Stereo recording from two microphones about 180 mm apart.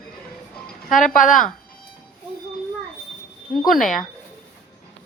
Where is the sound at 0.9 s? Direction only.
45° left (ahead or behind).